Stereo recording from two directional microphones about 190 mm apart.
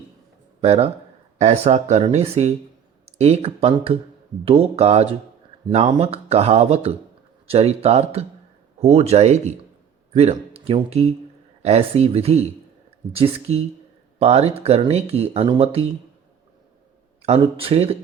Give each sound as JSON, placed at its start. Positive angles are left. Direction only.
{"t": 0.6, "sound": "speech", "side_deg": -30}
{"t": 17.2, "sound": "speech", "side_deg": -30}